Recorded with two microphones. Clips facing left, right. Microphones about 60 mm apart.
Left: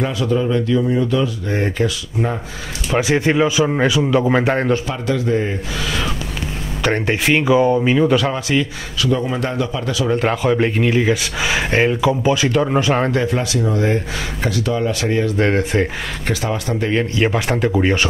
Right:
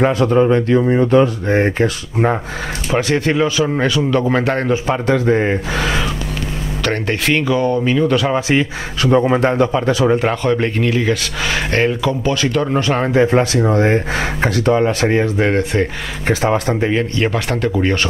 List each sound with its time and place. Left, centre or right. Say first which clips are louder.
0.0 s speech: right 6 dB; right
3.0 s a man's voice: left 1 dB; centre
4.8 s speech: right 5 dB; right
6.8 s a man's voice: left 1 dB; centre
8.3 s speech: right 3 dB; right
10.1 s speech: right 1 dB; centre
13.1 s speech: right 6 dB; right
15.3 s speech: right 1 dB; centre
16.3 s speech: right 7 dB; right
16.9 s speech: even; centre